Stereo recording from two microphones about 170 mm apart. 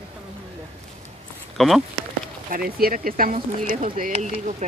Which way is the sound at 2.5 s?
60° right (ahead or behind).